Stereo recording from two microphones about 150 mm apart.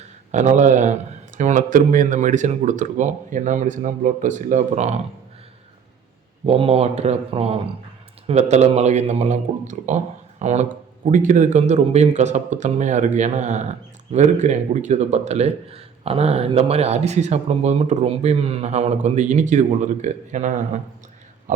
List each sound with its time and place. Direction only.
0.3 s speech: 55° right (ahead or behind)
6.4 s speech: 40° right (ahead or behind)